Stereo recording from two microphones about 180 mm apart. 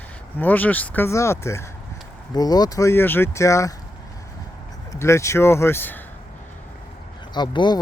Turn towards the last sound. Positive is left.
turn(degrees=25)  # may be behind; listen again after turning